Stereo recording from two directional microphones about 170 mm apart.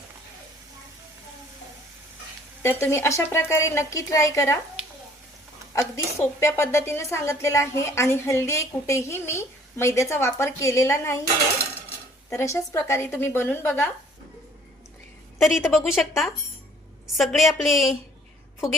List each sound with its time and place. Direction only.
2.6 s a woman's voice: 15° left (ahead or behind)
5.7 s a woman's voice: 15° left (ahead or behind)
12.3 s a woman's voice: 15° left (ahead or behind)
15.4 s a woman's voice: centre (ahead or behind)